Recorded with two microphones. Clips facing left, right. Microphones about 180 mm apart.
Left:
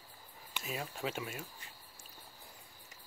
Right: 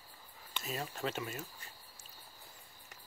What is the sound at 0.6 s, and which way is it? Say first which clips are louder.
Speech: right 1 dB; 10° left (ahead or behind).